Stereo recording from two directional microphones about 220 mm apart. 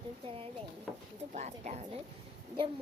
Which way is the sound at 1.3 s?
30° right (ahead or behind).